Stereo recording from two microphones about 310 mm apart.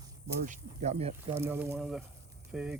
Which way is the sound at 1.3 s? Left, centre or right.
Centre.